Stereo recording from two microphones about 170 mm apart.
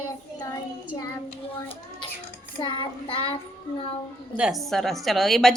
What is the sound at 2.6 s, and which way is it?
Child singing, 30° left (ahead or behind).